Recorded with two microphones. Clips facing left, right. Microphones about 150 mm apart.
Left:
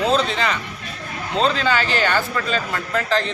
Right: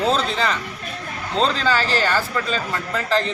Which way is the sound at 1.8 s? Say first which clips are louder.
Even; 35° right (ahead or behind).